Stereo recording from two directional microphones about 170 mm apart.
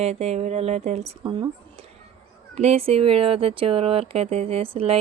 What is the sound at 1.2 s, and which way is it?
Speech, 25° right (ahead or behind).